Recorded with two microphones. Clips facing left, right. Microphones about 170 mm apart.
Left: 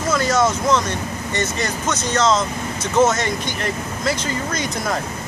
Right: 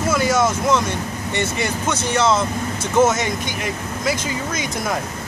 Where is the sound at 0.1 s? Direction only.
5° right (ahead or behind).